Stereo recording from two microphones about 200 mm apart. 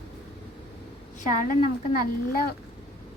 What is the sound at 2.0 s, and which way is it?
Speech, 50° left (ahead or behind).